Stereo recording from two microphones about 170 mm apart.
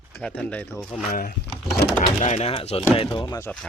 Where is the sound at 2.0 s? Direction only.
45° left (ahead or behind); by 3.3 s 30° left (ahead or behind).